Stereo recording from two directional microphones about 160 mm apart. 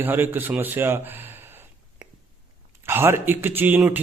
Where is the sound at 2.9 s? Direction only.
15° right (ahead or behind).